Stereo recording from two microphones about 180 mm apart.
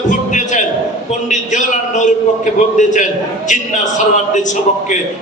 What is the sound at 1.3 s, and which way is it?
A man's voice, 45° left (ahead or behind).